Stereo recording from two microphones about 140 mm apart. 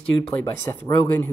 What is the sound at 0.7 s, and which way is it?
Speech, 25° left (ahead or behind).